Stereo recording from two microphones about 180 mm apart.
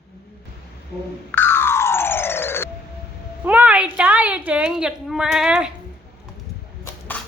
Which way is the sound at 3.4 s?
10° right (ahead or behind).